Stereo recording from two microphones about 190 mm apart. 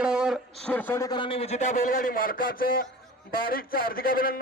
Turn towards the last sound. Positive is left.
turn(degrees=50)  # may be behind; listen again after turning